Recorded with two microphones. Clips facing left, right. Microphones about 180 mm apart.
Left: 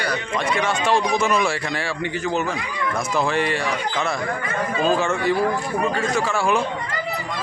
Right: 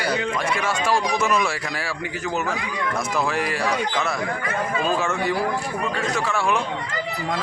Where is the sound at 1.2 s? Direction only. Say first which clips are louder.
Left 1 dB; centre (ahead or behind).